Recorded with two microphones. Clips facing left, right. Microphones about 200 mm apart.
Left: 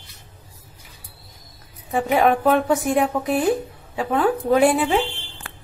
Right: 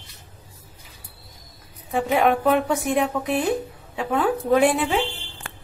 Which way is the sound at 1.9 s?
Centre (ahead or behind).